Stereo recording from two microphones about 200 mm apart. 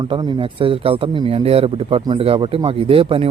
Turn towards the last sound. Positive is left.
turn(degrees=-25)  # may be behind; listen again after turning